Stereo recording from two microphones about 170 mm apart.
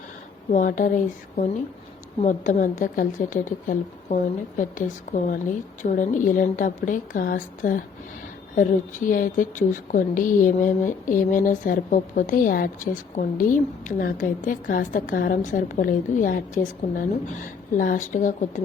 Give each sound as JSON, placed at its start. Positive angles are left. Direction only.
{"t": 0.5, "sound": "speech", "side_deg": 50}